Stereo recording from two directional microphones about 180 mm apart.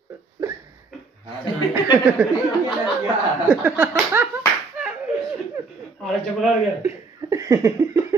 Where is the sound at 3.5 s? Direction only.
10° right (ahead or behind).